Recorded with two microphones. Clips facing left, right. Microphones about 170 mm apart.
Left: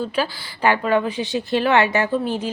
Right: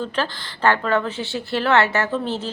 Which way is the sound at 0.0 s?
10° left (ahead or behind).